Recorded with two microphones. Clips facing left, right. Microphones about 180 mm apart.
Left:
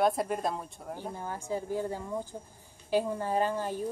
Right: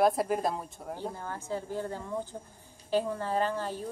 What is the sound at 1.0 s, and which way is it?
A woman's voice, 15° left (ahead or behind).